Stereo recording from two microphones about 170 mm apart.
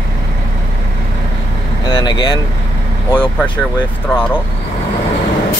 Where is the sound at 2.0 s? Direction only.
25° left (ahead or behind).